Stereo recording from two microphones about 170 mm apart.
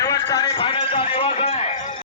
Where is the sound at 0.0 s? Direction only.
20° left (ahead or behind); by 1.7 s 40° left (ahead or behind).